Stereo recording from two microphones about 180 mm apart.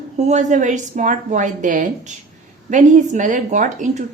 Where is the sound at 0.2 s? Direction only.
40° right (ahead or behind).